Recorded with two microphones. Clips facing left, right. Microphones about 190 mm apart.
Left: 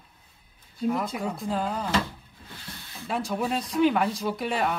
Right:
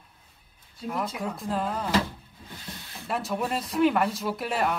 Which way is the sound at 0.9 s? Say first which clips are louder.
Left 3 dB; centre (ahead or behind).